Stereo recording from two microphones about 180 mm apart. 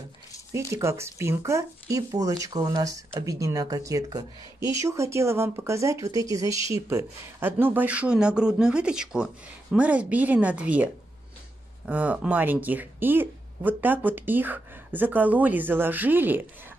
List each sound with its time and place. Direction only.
0.7 s speech: 15° right (ahead or behind)